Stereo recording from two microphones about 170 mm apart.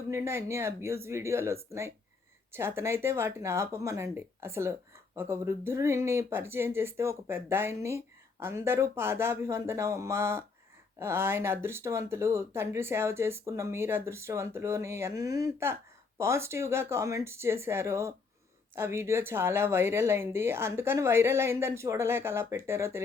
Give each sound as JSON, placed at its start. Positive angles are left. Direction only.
{"t": 0.1, "sound": "speech", "side_deg": -15}